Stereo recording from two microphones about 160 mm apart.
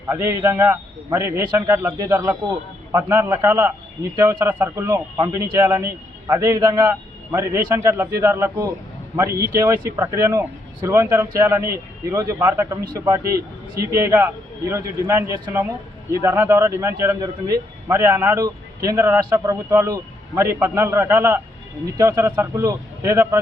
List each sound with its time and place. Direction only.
0.1 s a man's voice: 15° right (ahead or behind)